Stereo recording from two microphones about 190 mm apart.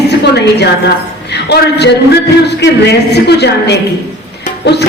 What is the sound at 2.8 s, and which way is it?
A man's voice, 60° left (ahead or behind).